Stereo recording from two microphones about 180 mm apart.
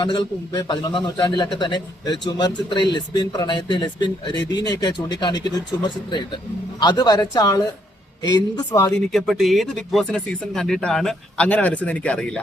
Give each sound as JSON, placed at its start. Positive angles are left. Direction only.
{"t": 0.0, "sound": "a man's voice", "side_deg": 25}
{"t": 9.1, "sound": "speech", "side_deg": 0}